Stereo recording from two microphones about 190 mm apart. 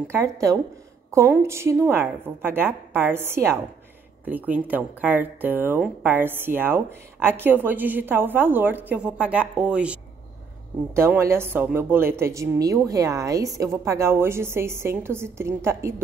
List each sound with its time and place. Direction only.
0.1 s speech: 15° right (ahead or behind)
11.0 s speech: 15° right (ahead or behind)